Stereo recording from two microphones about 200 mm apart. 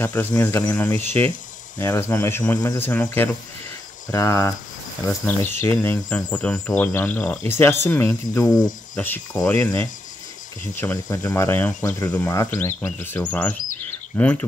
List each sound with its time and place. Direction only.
0.0 s speech: 10° left (ahead or behind)